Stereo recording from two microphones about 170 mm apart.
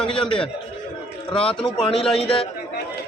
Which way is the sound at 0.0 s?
5° left (ahead or behind).